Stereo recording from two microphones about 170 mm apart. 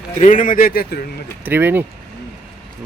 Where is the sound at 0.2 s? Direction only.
50° left (ahead or behind).